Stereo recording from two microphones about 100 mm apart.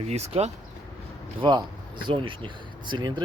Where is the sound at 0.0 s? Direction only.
90° right.